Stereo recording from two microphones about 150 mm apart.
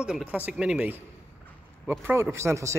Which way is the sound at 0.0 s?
5° right (ahead or behind).